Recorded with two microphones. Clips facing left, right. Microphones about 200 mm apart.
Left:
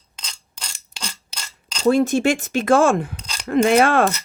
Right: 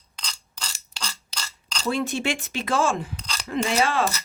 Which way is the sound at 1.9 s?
45° left (ahead or behind).